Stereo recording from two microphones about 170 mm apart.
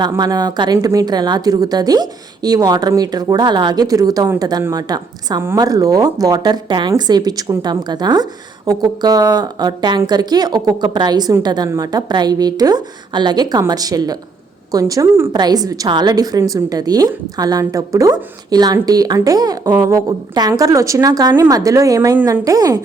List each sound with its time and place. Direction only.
0.0 s speech: 25° right (ahead or behind)